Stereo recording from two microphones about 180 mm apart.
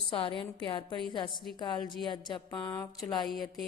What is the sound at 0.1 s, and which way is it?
A woman's voice, 30° left (ahead or behind).